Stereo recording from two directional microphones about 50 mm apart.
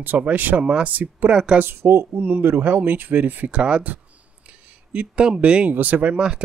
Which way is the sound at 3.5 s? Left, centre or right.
Right.